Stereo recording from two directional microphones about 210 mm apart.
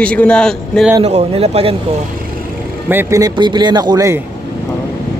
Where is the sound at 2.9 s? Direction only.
10° right (ahead or behind).